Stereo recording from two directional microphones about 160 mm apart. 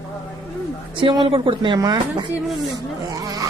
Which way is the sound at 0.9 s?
30° right (ahead or behind).